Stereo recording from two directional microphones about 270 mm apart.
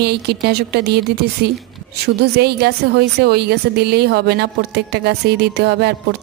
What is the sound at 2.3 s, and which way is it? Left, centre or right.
Speech, right.